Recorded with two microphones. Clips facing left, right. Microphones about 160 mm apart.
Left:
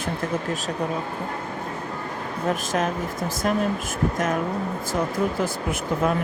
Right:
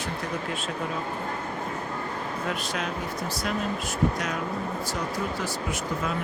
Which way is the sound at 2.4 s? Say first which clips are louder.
Left 9 dB; 45° left (ahead or behind).